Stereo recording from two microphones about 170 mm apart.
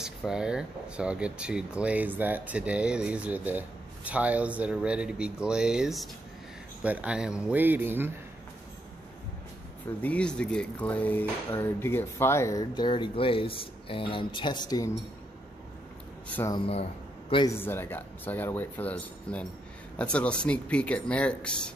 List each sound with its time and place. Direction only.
0.0 s speech: 5° right (ahead or behind)
10.0 s speech: 5° left (ahead or behind); by 15.0 s 20° left (ahead or behind)
16.4 s speech: 30° left (ahead or behind)
17.6 s speech: 15° left (ahead or behind)